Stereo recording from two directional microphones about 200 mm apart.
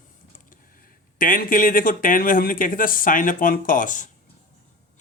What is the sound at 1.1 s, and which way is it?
Speech, 45° left (ahead or behind).